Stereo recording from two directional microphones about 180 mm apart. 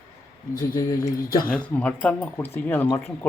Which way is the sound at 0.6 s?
15° left (ahead or behind).